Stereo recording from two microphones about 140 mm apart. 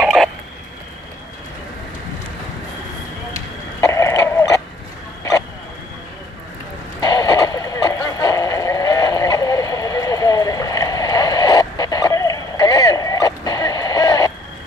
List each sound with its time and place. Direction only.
0.0 s frog: 5° right (ahead or behind)
3.8 s a sound: 20° left (ahead or behind)
7.0 s radio: 25° left (ahead or behind)